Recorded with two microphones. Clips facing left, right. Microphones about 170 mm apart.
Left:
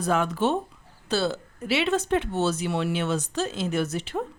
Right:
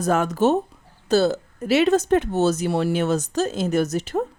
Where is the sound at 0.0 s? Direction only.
45° right (ahead or behind).